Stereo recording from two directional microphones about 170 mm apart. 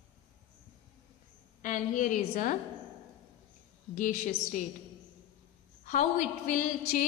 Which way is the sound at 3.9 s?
50° left (ahead or behind).